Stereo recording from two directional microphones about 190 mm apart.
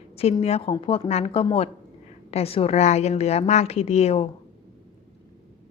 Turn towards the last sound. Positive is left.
turn(degrees=30)  # may be behind; listen again after turning